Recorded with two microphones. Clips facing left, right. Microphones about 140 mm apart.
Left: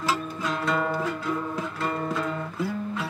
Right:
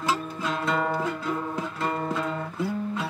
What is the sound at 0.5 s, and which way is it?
Music, 25° right (ahead or behind).